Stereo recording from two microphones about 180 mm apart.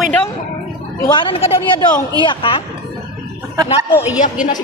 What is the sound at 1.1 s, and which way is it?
A woman's voice, 30° left (ahead or behind).